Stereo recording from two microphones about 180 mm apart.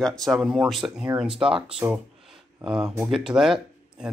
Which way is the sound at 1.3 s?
30° right (ahead or behind).